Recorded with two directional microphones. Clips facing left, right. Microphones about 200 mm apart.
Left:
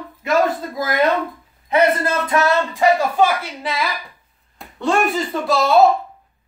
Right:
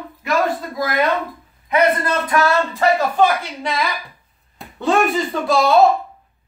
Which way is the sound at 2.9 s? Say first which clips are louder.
Right 1 dB; 10° left (ahead or behind).